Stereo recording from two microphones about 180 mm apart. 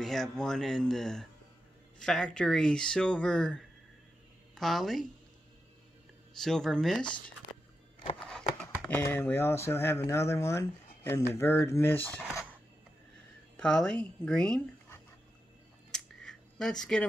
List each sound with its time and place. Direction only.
0.0 s speech: centre (ahead or behind)
6.4 s speech: 5° left (ahead or behind)
8.2 s speech: 5° left (ahead or behind)
13.6 s speech: 5° left (ahead or behind)
15.9 s scissors: 5° left (ahead or behind)